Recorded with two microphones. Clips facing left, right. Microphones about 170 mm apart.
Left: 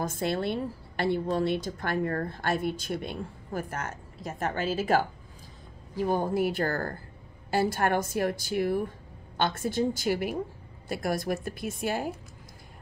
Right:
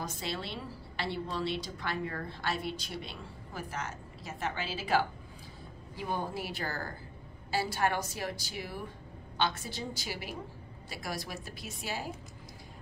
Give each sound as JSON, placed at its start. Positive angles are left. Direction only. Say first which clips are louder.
{"t": 0.0, "sound": "a woman's voice", "louder": "left 9 dB", "side_deg": 50}